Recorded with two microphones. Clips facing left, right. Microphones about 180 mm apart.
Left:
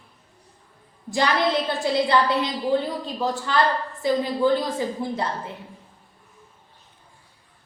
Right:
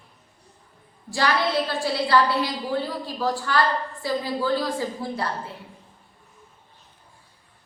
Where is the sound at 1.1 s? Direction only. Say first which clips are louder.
Left 2 dB; 20° left (ahead or behind).